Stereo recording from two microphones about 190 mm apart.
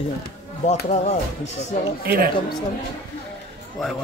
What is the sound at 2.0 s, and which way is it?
Speech, 50° right (ahead or behind).